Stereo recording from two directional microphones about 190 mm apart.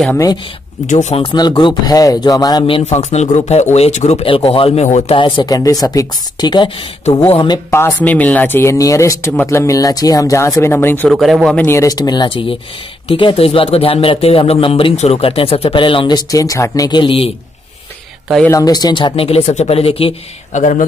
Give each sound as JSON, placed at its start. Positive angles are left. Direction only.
{"t": 0.8, "sound": "speech", "side_deg": 40}
{"t": 11.1, "sound": "speech", "side_deg": 0}
{"t": 11.6, "sound": "speech", "side_deg": 15}
{"t": 18.5, "sound": "speech", "side_deg": 20}